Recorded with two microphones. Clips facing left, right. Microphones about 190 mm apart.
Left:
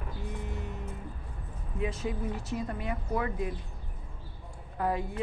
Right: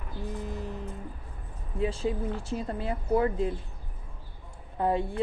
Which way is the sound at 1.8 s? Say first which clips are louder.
Right 4 dB; 30° right (ahead or behind).